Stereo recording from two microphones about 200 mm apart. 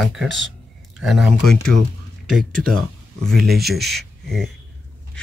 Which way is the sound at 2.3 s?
45° right (ahead or behind).